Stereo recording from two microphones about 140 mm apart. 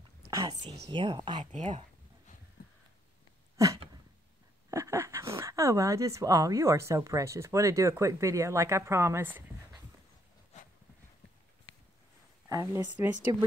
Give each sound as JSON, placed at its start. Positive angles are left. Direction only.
{"t": 0.3, "sound": "whispering", "side_deg": -25}
{"t": 0.8, "sound": "speech", "side_deg": -30}
{"t": 1.5, "sound": "speech", "side_deg": -55}
{"t": 3.5, "sound": "a sound", "side_deg": -25}
{"t": 4.6, "sound": "speech", "side_deg": -20}
{"t": 12.4, "sound": "speech", "side_deg": -25}